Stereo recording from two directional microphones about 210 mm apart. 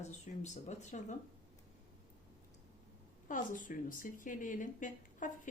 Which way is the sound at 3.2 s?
40° left (ahead or behind).